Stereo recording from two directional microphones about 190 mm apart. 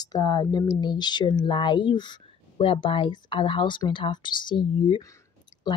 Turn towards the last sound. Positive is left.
turn(degrees=20)  # may be behind; listen again after turning